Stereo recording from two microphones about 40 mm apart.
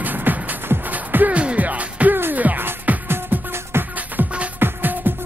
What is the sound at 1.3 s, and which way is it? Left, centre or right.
Music, right.